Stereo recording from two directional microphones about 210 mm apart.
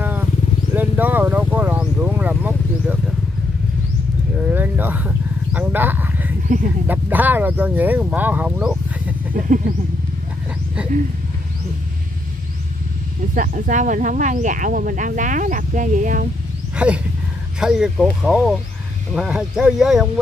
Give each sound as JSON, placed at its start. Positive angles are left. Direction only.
{"t": 0.0, "sound": "vehicle", "side_deg": -10}
{"t": 4.5, "sound": "a sound", "side_deg": -10}
{"t": 6.9, "sound": "speech", "side_deg": -10}
{"t": 13.3, "sound": "speech", "side_deg": -40}
{"t": 16.7, "sound": "roaring cats", "side_deg": -5}
{"t": 17.6, "sound": "speech", "side_deg": -5}